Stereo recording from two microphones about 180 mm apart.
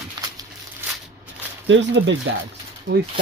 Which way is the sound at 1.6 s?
85° right.